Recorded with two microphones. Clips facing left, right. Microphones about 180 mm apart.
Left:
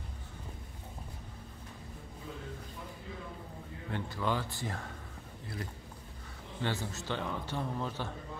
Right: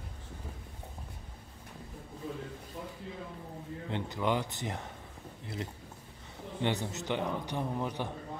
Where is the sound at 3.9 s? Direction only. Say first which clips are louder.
Right 2 dB; 20° right (ahead or behind).